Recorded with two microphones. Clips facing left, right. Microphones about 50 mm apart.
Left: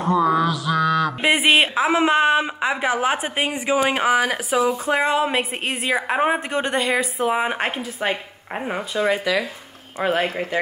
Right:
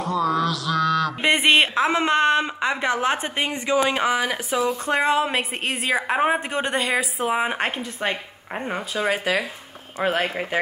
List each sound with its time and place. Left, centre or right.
0.0 s mantra: left
3.7 s speech: left
4.6 s a woman's voice: centre
9.2 s speech: right
9.9 s a woman's voice: centre